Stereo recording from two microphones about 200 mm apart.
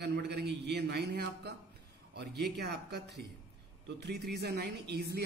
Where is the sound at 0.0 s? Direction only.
55° right (ahead or behind).